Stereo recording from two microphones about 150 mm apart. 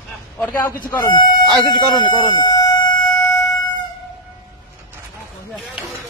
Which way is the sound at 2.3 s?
30° left (ahead or behind).